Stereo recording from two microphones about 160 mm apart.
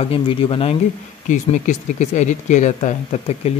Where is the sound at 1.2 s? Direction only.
50° left (ahead or behind).